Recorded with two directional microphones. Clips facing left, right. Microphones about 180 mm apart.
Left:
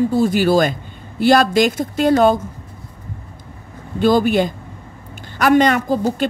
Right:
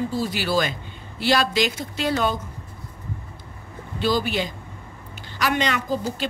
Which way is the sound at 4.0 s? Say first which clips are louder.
Left 9 dB; 50° left (ahead or behind).